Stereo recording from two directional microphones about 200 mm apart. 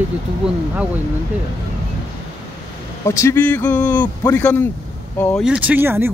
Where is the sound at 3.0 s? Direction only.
15° left (ahead or behind).